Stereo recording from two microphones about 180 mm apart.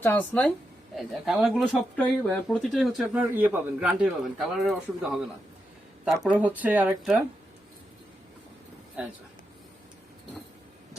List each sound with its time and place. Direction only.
0.0 s speech: 10° left (ahead or behind); by 7.2 s 5° right (ahead or behind)